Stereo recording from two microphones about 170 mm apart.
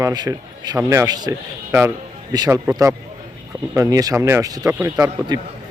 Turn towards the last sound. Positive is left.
turn(degrees=-20)  # may be behind; listen again after turning